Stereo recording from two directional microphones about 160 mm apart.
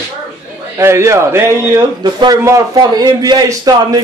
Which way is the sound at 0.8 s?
15° right (ahead or behind).